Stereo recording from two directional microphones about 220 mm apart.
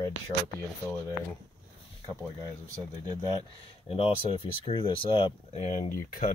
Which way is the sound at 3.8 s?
25° left (ahead or behind).